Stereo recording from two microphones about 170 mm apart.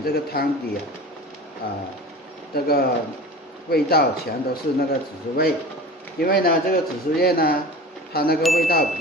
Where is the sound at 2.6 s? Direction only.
65° left (ahead or behind).